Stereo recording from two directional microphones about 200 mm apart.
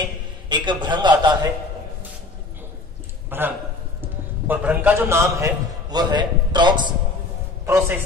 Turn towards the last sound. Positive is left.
turn(degrees=-10)  # may be behind; listen again after turning